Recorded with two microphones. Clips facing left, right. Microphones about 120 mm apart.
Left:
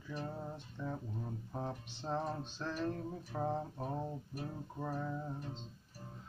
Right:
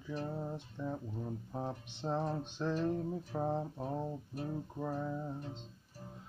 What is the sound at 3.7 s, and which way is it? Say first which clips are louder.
Mantra: right 2 dB; 5° right (ahead or behind).